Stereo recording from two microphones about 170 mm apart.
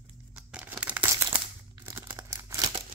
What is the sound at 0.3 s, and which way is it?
Crumpling, 10° right (ahead or behind).